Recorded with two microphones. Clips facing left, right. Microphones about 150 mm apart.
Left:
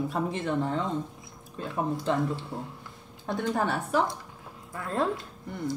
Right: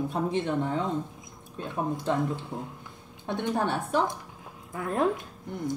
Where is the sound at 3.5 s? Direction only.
Centre (ahead or behind).